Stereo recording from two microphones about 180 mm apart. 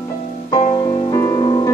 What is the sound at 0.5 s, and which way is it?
Music, 25° left (ahead or behind).